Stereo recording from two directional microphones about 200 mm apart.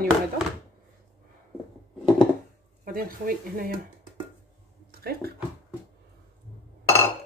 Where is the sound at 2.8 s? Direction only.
45° right (ahead or behind).